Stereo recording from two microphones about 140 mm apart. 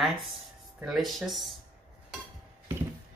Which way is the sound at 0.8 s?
Centre (ahead or behind).